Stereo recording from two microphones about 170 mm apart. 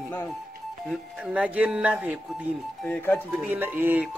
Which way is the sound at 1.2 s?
5° right (ahead or behind).